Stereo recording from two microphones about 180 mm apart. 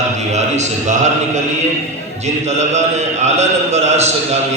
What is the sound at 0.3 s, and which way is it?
Speech, 40° right (ahead or behind).